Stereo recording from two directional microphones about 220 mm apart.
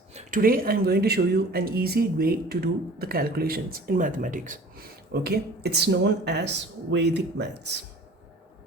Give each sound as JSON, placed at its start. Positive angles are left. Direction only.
{"t": 0.1, "sound": "speech", "side_deg": -35}